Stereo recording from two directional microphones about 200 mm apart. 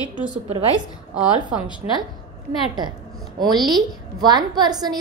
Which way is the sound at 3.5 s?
20° right (ahead or behind).